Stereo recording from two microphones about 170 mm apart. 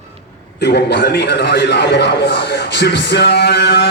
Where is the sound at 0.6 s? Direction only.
80° left.